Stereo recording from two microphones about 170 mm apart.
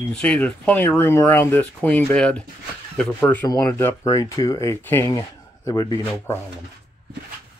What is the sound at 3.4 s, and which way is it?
Speech, 20° left (ahead or behind).